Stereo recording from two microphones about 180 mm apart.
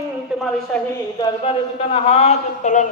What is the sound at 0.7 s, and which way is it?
Speech, 5° left (ahead or behind).